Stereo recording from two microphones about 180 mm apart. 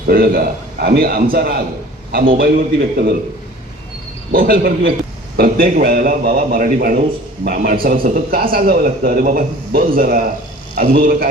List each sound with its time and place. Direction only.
0.1 s a man's voice: 55° right (ahead or behind)
4.3 s a man's voice: 55° right (ahead or behind)